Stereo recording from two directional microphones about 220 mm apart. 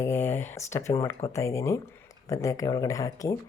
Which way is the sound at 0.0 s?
10° left (ahead or behind).